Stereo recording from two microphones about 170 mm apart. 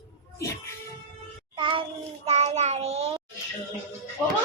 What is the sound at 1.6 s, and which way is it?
Child singing, 30° right (ahead or behind).